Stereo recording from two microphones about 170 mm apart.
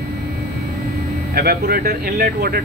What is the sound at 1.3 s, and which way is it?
Speech, 60° right (ahead or behind).